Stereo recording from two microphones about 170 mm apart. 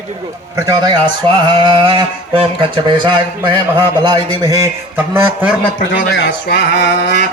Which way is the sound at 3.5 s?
30° right (ahead or behind).